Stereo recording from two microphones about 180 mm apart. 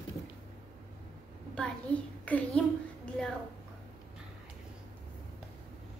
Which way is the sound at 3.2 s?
5° left (ahead or behind).